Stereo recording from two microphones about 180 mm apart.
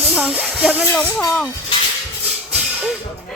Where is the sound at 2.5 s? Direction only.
5° right (ahead or behind).